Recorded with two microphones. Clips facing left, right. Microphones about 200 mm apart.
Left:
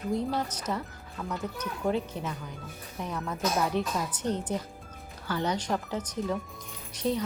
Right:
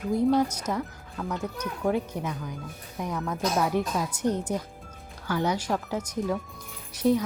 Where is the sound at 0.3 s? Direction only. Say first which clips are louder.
Right 6 dB; 10° right (ahead or behind).